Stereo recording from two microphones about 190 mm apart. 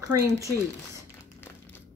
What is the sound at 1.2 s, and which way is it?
Music, 10° left (ahead or behind).